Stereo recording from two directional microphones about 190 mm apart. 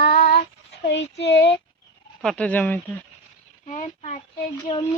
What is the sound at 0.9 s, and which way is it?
Speech, 65° left (ahead or behind).